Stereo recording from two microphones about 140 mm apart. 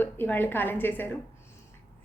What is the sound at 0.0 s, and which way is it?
A woman's voice, 15° left (ahead or behind).